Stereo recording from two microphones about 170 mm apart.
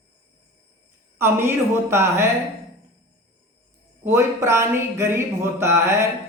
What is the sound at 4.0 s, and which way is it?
Speech, 15° right (ahead or behind).